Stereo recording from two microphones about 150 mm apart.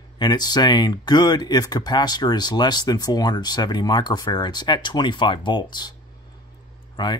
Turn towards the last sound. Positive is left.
turn(degrees=30)  # may be behind; listen again after turning